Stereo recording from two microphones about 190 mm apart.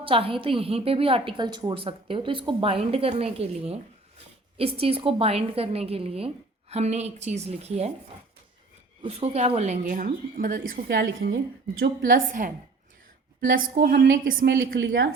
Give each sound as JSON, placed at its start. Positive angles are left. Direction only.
{"t": 0.0, "sound": "a woman's voice", "side_deg": -30}
{"t": 9.0, "sound": "a woman's voice", "side_deg": -35}